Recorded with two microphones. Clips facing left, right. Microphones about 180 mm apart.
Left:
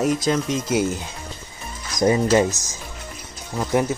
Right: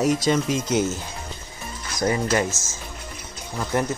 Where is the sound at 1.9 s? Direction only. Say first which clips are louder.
Left 5 dB; 20° left (ahead or behind).